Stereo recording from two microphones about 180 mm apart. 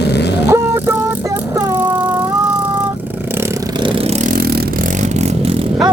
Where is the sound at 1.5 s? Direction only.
25° right (ahead or behind).